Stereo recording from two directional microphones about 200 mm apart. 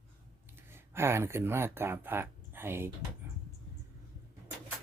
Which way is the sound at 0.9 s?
10° right (ahead or behind).